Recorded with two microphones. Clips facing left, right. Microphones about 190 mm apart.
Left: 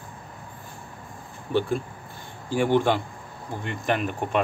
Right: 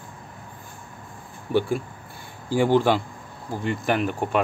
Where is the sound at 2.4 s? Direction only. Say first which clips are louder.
Right 2 dB; 10° right (ahead or behind).